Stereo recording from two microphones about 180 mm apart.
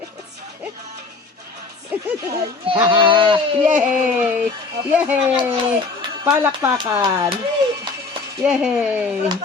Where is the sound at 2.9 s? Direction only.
25° right (ahead or behind).